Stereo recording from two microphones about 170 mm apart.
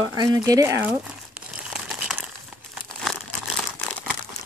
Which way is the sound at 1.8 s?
5° right (ahead or behind).